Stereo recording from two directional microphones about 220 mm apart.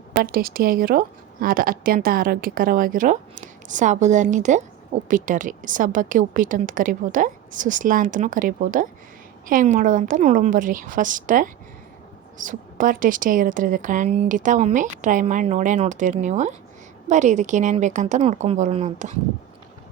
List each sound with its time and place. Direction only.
0.2 s speech: 40° right (ahead or behind)